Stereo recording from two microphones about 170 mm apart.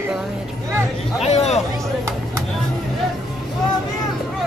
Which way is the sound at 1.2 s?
40° left (ahead or behind).